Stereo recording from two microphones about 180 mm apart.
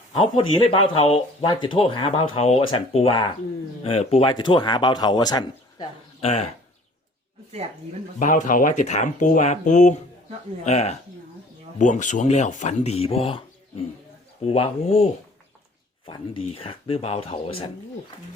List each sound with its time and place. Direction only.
0.1 s speech: 30° left (ahead or behind)
8.2 s speech: 45° left (ahead or behind)